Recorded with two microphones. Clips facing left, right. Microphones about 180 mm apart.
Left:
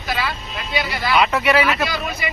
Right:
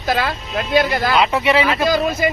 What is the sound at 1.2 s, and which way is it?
Speech, 25° right (ahead or behind).